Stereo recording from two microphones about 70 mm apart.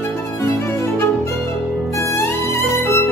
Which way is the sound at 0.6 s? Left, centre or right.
Left.